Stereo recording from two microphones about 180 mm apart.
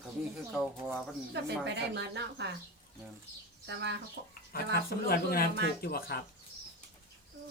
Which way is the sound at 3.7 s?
75° right (ahead or behind).